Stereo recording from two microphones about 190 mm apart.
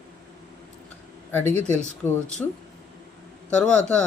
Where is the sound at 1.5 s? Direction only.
35° right (ahead or behind).